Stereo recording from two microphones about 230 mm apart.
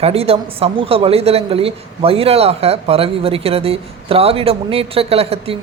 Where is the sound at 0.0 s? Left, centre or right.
Right.